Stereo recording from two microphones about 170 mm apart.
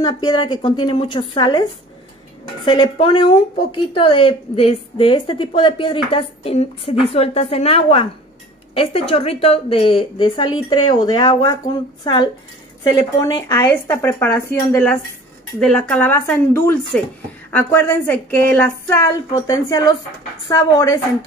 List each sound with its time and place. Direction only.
0.0 s a woman's voice: 30° left (ahead or behind)